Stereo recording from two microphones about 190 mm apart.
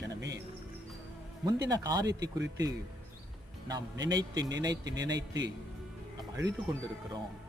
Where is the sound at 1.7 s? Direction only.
20° right (ahead or behind).